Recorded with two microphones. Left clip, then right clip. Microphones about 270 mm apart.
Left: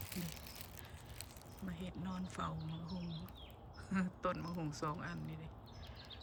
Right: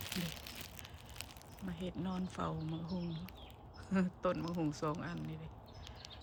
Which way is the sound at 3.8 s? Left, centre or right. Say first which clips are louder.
Right 4 dB; centre.